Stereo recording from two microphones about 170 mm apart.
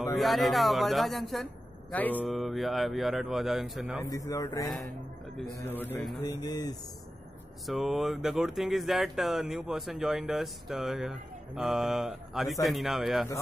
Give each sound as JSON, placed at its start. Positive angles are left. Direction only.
{"t": 0.2, "sound": "speech", "side_deg": 0}
{"t": 4.0, "sound": "a man's voice", "side_deg": 20}
{"t": 6.2, "sound": "a man's voice", "side_deg": 20}
{"t": 7.6, "sound": "speech", "side_deg": 0}